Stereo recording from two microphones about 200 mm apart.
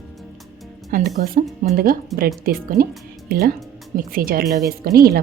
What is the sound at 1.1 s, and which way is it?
A woman's voice, 40° right (ahead or behind).